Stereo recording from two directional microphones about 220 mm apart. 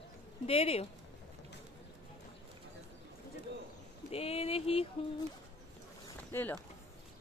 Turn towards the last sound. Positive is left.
turn(degrees=10)  # may be behind; listen again after turning